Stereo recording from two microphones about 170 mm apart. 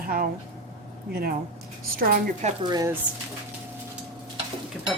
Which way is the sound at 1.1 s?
60° right (ahead or behind).